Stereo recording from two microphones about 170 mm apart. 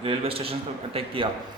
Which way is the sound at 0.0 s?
35° right (ahead or behind).